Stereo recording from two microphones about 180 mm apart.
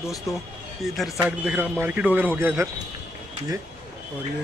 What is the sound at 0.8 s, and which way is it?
A man's voice, centre (ahead or behind).